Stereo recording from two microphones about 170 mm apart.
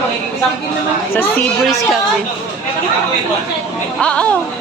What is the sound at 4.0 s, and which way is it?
Speech, 5° left (ahead or behind).